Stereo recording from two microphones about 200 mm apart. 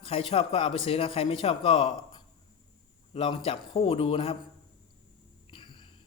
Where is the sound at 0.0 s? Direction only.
30° left (ahead or behind).